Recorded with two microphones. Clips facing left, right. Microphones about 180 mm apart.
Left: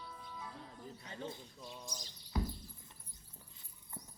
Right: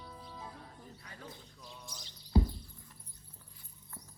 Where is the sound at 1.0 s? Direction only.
25° left (ahead or behind).